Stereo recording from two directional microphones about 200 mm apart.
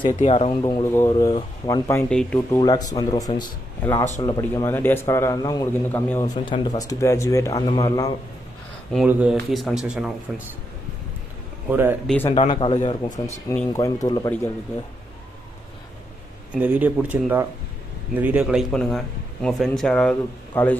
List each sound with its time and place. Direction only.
0.2 s a man's voice: 30° left (ahead or behind); by 2.4 s 5° left (ahead or behind)
2.5 s a man's voice: 20° left (ahead or behind)
8.9 s a man's voice: 5° right (ahead or behind)
11.7 s speech: 10° right (ahead or behind)
12.4 s a man's voice: 25° left (ahead or behind)
16.5 s a man's voice: 5° right (ahead or behind)